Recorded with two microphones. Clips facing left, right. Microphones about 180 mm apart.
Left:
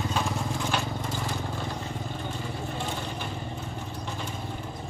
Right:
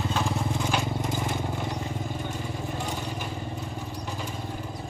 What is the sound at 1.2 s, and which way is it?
Vehicle, 20° right (ahead or behind).